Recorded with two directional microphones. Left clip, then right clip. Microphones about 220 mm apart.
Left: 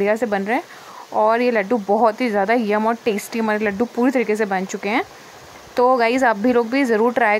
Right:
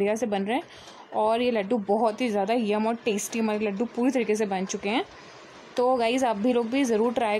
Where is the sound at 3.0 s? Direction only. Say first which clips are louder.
Left 6 dB; 45° left (ahead or behind).